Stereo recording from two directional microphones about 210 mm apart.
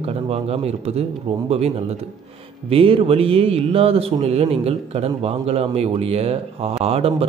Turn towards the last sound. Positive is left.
turn(degrees=-25)  # may be behind; listen again after turning